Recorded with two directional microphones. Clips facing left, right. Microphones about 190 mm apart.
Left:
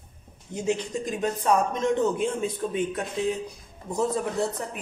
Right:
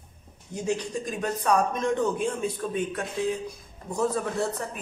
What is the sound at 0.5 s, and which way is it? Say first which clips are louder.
A man's voice: left 1 dB; 20° left (ahead or behind).